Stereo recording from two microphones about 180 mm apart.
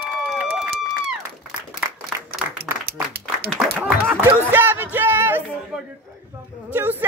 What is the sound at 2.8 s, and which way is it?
Applause, 60° right (ahead or behind).